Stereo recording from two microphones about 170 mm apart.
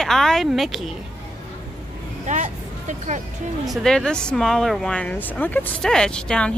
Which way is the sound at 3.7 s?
Centre (ahead or behind).